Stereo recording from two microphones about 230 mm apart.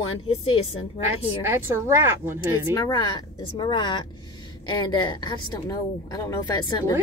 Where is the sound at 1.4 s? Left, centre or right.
Centre.